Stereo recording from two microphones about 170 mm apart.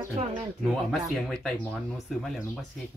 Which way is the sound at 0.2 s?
45° right (ahead or behind).